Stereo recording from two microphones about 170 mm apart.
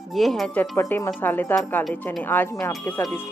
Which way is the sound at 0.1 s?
Centre (ahead or behind).